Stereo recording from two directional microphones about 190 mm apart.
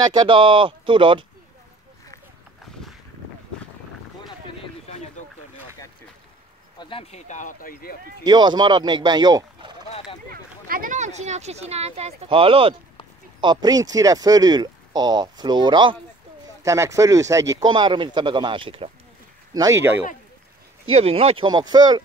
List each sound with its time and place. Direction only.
0.0 s speech: 25° right (ahead or behind)
6.8 s speech: 30° left (ahead or behind); by 8.0 s 50° left (ahead or behind)
8.2 s speech: 20° right (ahead or behind)
10.3 s speech: 50° right (ahead or behind); by 18.9 s 25° right (ahead or behind)
19.5 s speech: 15° right (ahead or behind)
20.9 s speech: 30° right (ahead or behind)